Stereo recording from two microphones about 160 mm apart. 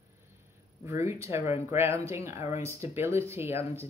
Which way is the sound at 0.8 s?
20° right (ahead or behind).